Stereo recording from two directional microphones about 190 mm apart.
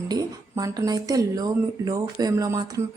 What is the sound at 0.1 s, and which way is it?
Speech, 20° right (ahead or behind).